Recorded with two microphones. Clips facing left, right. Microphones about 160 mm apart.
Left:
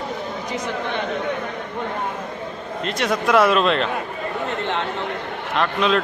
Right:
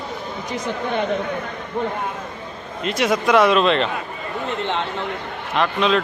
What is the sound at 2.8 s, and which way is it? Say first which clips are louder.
A man's voice: right 3 dB; centre (ahead or behind).